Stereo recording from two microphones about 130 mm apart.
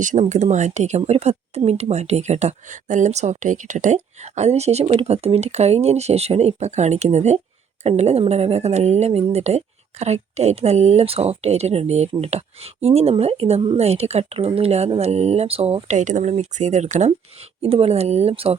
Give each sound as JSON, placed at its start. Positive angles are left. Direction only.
{"t": 0.0, "sound": "speech", "side_deg": -70}
{"t": 17.6, "sound": "speech", "side_deg": -50}